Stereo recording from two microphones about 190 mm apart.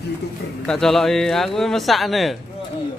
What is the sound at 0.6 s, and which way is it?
A man's voice, 5° left (ahead or behind).